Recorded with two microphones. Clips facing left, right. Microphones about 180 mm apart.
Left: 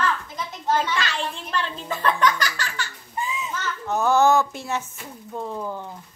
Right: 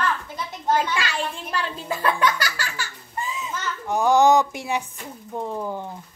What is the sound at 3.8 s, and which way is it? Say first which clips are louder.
A child's voice: right 2 dB; 15° right (ahead or behind).